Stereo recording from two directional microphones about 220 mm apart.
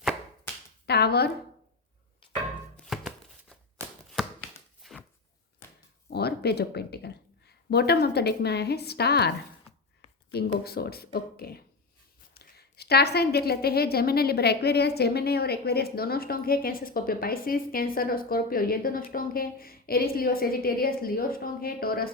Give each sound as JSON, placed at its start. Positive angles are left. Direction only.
{"t": 0.0, "sound": "a sound", "side_deg": 5}
{"t": 0.9, "sound": "a woman's voice", "side_deg": 45}
{"t": 2.3, "sound": "music", "side_deg": 0}
{"t": 4.8, "sound": "a sound", "side_deg": 0}
{"t": 6.1, "sound": "a woman's voice", "side_deg": 45}
{"t": 10.3, "sound": "a woman's voice", "side_deg": 45}